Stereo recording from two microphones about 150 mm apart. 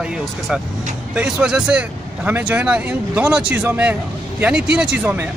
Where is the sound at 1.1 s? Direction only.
5° right (ahead or behind).